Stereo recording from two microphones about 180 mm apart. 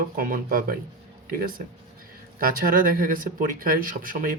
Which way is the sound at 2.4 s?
50° right (ahead or behind).